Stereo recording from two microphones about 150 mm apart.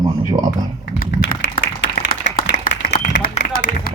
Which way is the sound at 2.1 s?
65° left (ahead or behind).